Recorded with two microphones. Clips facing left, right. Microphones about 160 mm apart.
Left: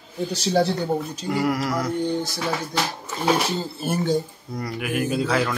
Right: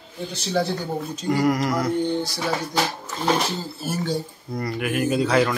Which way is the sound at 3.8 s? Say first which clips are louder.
Left 4 dB; 50° left (ahead or behind).